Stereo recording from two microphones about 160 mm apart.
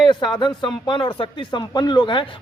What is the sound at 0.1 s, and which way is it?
Speech, 30° left (ahead or behind).